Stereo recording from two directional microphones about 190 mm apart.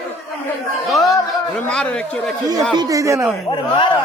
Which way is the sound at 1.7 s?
5° left (ahead or behind).